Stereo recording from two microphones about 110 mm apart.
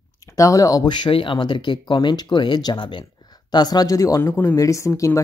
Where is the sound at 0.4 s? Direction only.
30° left (ahead or behind).